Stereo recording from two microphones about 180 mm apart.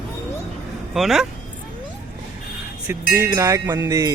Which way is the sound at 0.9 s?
Centre (ahead or behind).